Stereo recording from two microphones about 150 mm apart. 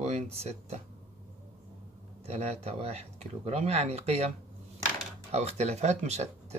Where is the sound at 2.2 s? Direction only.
45° right (ahead or behind).